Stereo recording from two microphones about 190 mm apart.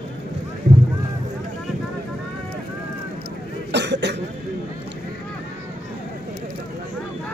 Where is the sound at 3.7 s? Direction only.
65° right (ahead or behind).